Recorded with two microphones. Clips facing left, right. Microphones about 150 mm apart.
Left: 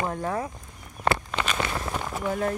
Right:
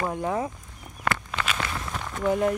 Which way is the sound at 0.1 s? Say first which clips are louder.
Right 2 dB; 15° right (ahead or behind).